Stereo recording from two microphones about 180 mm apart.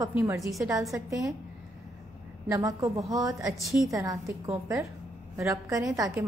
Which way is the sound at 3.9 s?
20° right (ahead or behind).